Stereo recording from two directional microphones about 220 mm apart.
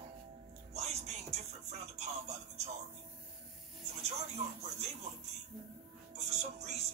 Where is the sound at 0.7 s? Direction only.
30° right (ahead or behind).